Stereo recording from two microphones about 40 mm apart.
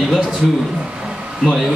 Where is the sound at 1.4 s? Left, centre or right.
Centre.